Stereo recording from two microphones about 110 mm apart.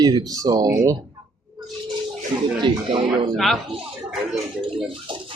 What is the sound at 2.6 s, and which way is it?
Speech, 50° right (ahead or behind).